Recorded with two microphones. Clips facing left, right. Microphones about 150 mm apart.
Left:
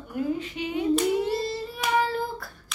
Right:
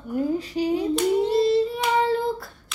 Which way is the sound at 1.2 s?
20° right (ahead or behind).